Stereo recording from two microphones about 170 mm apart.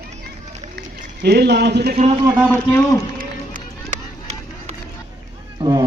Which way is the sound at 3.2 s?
50° right (ahead or behind).